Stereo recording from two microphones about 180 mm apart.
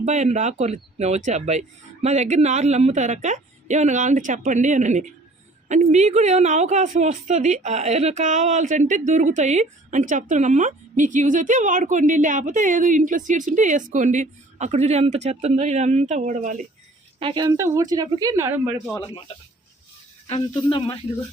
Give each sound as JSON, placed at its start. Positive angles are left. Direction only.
{"t": 0.0, "sound": "a woman's voice", "side_deg": -40}
{"t": 17.2, "sound": "speech", "side_deg": -25}
{"t": 20.5, "sound": "speech", "side_deg": 25}